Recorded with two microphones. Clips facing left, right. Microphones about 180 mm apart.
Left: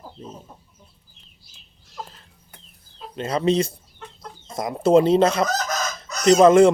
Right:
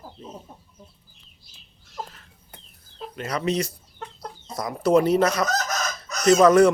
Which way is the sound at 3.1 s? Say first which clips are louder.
Left 5 dB; 25° left (ahead or behind).